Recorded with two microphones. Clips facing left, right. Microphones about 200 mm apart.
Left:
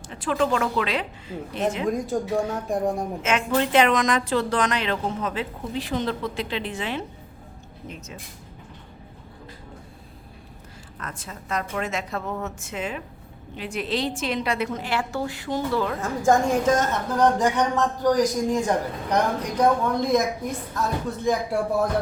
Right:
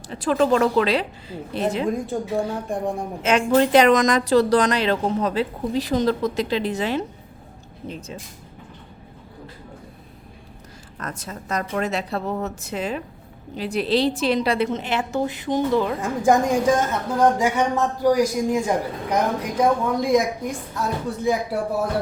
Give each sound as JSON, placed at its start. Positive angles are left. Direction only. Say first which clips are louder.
{"t": 0.1, "sound": "a woman's voice", "louder": "right 5 dB", "side_deg": -40}
{"t": 1.9, "sound": "speech", "louder": "even", "side_deg": 0}
{"t": 3.2, "sound": "a woman's voice", "louder": "right 6 dB", "side_deg": -35}
{"t": 11.0, "sound": "a woman's voice", "louder": "right 5 dB", "side_deg": -40}
{"t": 21.2, "sound": "speech", "louder": "right 1 dB", "side_deg": -5}